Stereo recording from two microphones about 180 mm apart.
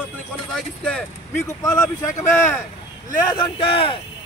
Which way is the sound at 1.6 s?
20° left (ahead or behind).